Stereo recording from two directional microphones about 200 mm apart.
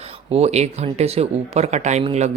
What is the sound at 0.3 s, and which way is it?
Speech, 30° right (ahead or behind).